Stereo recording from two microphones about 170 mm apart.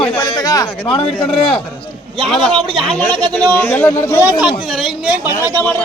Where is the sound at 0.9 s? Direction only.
30° left (ahead or behind).